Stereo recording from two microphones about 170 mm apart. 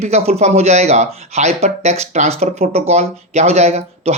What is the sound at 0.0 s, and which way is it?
Speech, 40° right (ahead or behind).